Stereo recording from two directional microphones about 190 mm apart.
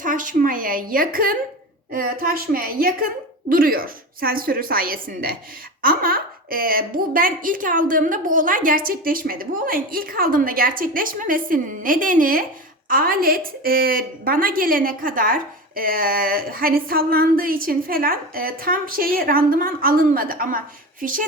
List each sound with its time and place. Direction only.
0.0 s a woman's voice: 45° right (ahead or behind)